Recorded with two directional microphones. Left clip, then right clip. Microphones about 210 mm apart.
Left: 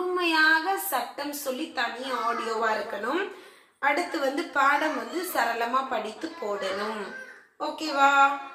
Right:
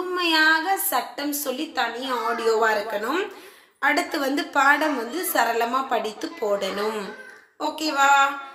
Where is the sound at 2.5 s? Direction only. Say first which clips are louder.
Right 9 dB; 45° right (ahead or behind).